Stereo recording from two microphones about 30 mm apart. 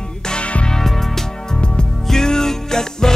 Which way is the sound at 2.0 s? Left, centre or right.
Centre.